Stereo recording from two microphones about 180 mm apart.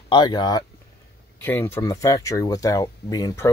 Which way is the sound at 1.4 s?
10° left (ahead or behind).